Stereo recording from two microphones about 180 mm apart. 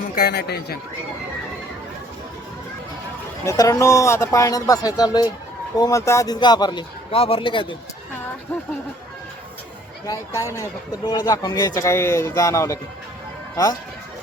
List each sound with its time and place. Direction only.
0.2 s a man's voice: 65° left (ahead or behind)
3.4 s speech: 20° left (ahead or behind)
10.1 s speech: 15° left (ahead or behind)